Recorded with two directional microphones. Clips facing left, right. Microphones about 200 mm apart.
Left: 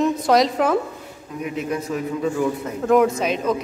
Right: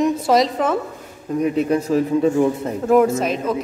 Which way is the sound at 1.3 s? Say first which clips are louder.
Right 7 dB; 35° right (ahead or behind).